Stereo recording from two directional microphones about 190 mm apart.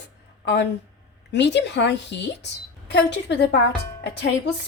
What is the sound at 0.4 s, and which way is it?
Speech, 65° left (ahead or behind).